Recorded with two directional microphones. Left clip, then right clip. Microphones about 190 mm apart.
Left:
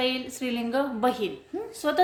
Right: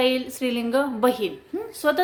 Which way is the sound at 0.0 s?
15° right (ahead or behind).